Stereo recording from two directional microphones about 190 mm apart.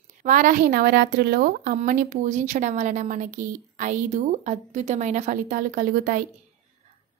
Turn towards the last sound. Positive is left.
turn(degrees=-45)  # may be behind; listen again after turning